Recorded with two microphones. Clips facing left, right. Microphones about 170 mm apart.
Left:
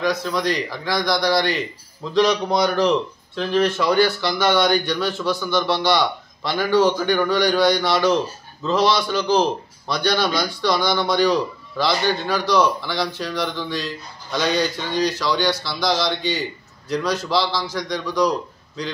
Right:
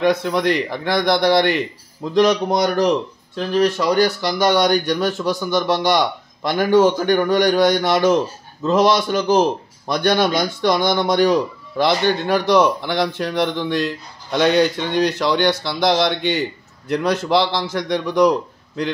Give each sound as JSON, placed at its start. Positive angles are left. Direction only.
{"t": 0.0, "sound": "a man's voice", "side_deg": -55}